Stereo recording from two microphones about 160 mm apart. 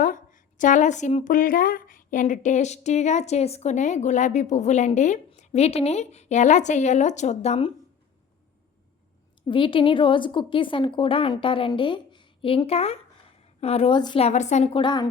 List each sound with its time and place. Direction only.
0.0 s a woman's voice: 55° left (ahead or behind)
9.5 s a woman's voice: 30° left (ahead or behind)
14.3 s a woman's voice: 45° left (ahead or behind); by 15.0 s 30° left (ahead or behind)